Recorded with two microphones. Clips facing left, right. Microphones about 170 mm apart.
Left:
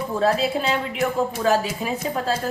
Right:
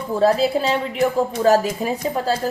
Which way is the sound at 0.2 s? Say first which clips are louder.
Right 4 dB; 35° right (ahead or behind).